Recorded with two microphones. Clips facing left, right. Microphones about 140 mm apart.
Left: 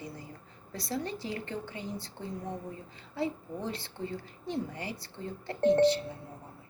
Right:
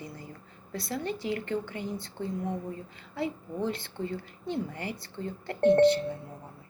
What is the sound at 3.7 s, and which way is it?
Speech, 30° left (ahead or behind).